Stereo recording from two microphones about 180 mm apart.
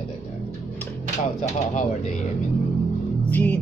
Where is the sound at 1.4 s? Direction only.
40° left (ahead or behind).